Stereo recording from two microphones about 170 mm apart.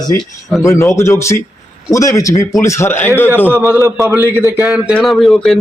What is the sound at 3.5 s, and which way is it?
A man's voice, 10° right (ahead or behind).